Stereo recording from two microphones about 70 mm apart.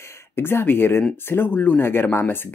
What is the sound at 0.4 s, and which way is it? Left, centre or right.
Speech, left.